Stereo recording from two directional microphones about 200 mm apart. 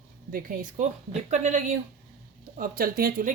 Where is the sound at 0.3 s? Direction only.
45° right (ahead or behind).